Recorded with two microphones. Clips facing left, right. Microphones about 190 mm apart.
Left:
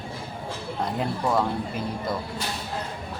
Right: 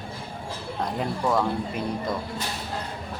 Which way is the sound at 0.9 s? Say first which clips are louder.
Even; 5° left (ahead or behind).